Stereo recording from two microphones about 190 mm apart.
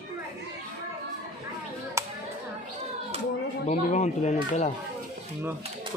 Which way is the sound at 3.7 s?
40° left (ahead or behind).